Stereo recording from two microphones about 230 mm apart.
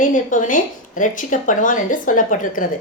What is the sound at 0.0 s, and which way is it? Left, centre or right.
A woman's voice, left.